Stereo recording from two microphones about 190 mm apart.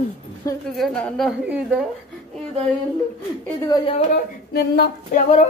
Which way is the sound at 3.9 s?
55° left (ahead or behind).